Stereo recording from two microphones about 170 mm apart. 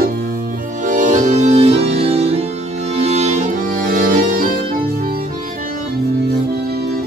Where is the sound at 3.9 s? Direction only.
55° right (ahead or behind).